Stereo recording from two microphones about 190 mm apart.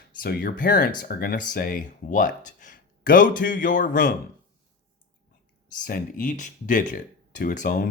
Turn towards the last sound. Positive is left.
turn(degrees=45)  # may be behind; listen again after turning